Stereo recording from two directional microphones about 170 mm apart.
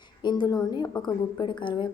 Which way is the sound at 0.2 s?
25° left (ahead or behind).